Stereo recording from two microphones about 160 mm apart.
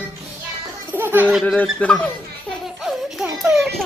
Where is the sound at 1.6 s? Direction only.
5° left (ahead or behind).